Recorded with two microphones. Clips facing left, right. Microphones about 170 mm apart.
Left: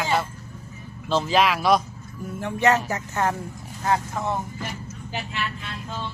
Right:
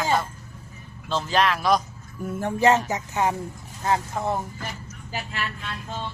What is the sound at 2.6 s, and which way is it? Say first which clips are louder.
Speech: right 1 dB; 25° right (ahead or behind).